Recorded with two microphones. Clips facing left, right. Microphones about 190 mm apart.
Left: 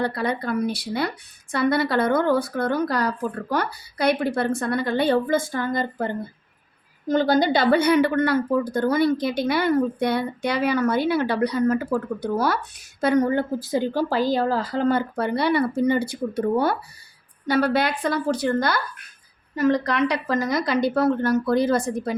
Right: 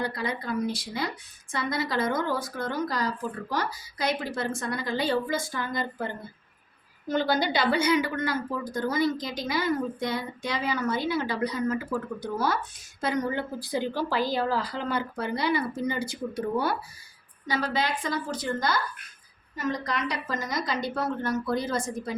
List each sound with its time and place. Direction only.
0.0 s a woman's voice: 60° left (ahead or behind)
7.1 s a woman's voice: 45° left (ahead or behind); by 22.1 s 65° left (ahead or behind)